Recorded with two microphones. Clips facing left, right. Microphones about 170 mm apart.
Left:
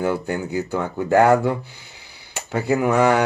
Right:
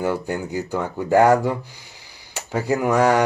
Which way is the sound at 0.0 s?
10° right (ahead or behind).